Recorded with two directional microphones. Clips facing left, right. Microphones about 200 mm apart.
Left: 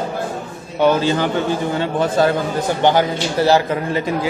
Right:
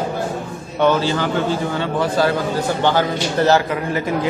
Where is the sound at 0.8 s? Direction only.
15° left (ahead or behind).